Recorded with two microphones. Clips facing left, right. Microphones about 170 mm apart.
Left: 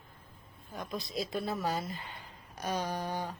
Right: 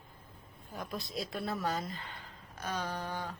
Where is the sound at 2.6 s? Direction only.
10° left (ahead or behind).